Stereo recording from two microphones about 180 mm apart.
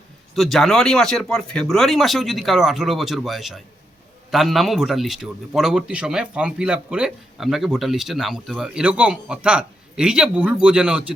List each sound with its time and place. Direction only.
0.3 s a man's voice: centre (ahead or behind)